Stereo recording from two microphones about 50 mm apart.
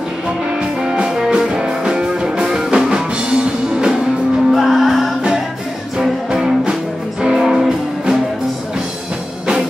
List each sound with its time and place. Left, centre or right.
0.6 s music: centre
4.5 s music: centre
5.9 s music: centre